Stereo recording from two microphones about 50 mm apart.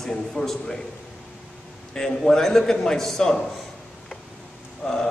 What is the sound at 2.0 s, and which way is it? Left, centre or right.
A man's voice, centre.